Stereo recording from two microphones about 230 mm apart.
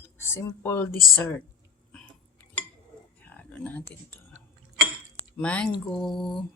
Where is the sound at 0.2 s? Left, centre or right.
Centre.